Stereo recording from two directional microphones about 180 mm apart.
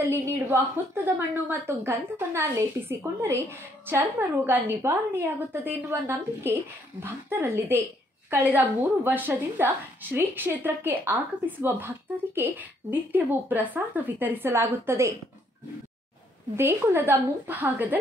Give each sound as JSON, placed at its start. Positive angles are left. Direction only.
{"t": 0.0, "sound": "a woman's voice", "side_deg": -15}
{"t": 16.5, "sound": "a woman's voice", "side_deg": -15}